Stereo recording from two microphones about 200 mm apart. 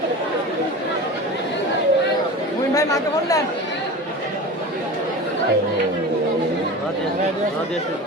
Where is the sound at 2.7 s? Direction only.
15° left (ahead or behind).